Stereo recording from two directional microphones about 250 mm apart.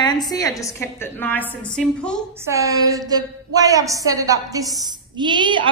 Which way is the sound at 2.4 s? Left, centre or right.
Centre.